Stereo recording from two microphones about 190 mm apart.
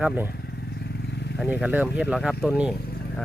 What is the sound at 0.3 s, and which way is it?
Vehicle, 55° left (ahead or behind).